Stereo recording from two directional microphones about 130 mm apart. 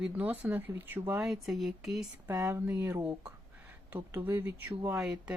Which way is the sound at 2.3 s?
20° right (ahead or behind).